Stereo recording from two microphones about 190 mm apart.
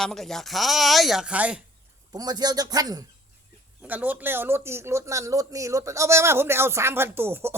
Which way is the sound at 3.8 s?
10° right (ahead or behind).